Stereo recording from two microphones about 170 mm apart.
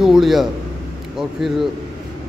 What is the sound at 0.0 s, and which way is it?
A man's voice, centre (ahead or behind).